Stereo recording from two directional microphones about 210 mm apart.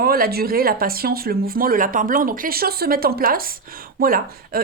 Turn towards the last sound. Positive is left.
turn(degrees=-45)  # may be behind; listen again after turning